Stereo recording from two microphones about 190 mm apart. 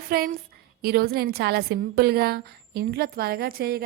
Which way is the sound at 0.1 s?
50° right (ahead or behind).